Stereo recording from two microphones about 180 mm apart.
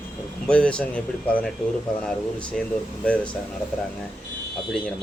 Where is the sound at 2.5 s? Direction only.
Centre (ahead or behind).